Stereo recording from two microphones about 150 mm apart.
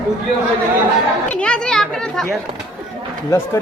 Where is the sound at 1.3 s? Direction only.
5° left (ahead or behind).